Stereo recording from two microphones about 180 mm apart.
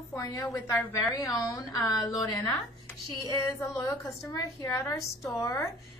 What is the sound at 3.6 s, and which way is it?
A woman's voice, 15° left (ahead or behind).